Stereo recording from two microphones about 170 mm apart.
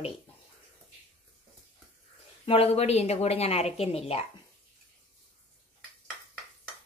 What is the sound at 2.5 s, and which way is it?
A woman's voice, 35° left (ahead or behind).